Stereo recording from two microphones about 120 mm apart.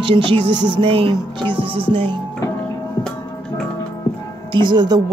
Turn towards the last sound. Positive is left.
turn(degrees=-35)  # may be behind; listen again after turning